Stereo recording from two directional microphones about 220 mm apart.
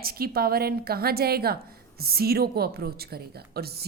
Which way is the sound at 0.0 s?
45° right (ahead or behind).